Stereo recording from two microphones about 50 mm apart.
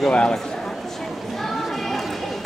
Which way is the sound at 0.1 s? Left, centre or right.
Centre.